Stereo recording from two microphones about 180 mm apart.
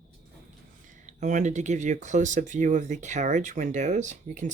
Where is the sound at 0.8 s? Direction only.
45° right (ahead or behind).